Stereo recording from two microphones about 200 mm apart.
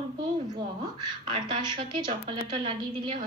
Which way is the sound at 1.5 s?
25° right (ahead or behind).